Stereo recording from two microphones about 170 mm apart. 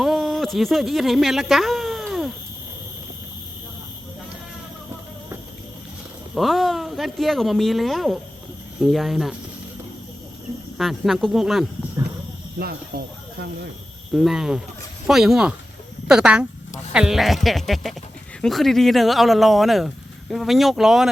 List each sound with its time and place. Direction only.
0.0 s a sound: centre (ahead or behind)
6.3 s speech: centre (ahead or behind)
10.8 s speech: centre (ahead or behind)
12.5 s speech: 65° right (ahead or behind)
14.1 s speech: centre (ahead or behind)